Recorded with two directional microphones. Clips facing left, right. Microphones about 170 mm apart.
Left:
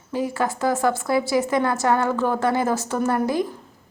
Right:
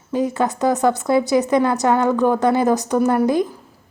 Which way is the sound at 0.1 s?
20° right (ahead or behind).